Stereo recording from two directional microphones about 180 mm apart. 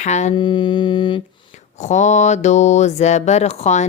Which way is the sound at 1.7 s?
40° left (ahead or behind).